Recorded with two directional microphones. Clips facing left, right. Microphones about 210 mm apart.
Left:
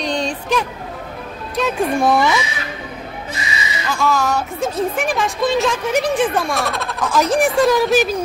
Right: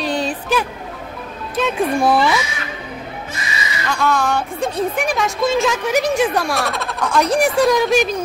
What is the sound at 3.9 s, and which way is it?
Speech, centre (ahead or behind).